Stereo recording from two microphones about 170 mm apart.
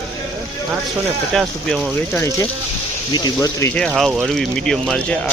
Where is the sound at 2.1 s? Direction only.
15° left (ahead or behind).